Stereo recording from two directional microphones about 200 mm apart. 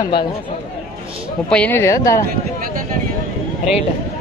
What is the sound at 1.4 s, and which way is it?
Speech, 5° left (ahead or behind).